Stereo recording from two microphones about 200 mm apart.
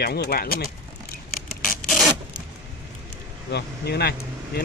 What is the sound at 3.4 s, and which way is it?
Speech, 55° left (ahead or behind).